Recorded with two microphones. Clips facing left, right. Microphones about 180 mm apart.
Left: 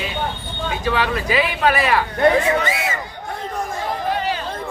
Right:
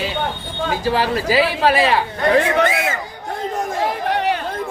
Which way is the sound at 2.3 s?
60° right (ahead or behind).